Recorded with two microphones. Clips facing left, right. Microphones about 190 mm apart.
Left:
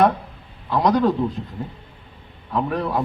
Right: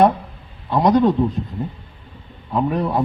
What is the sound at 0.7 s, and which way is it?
Speech, 20° right (ahead or behind).